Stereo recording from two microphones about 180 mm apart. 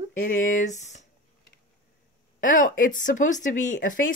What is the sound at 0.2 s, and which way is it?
Speech, 45° left (ahead or behind).